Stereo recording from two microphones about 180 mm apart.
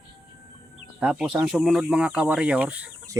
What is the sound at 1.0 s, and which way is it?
Speech, 5° right (ahead or behind).